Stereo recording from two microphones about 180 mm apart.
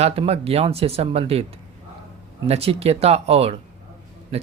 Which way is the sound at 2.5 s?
35° right (ahead or behind).